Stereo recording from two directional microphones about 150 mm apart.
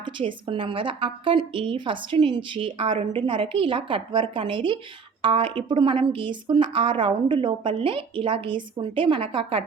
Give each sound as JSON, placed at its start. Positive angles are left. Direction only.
{"t": 0.0, "sound": "a woman's voice", "side_deg": -35}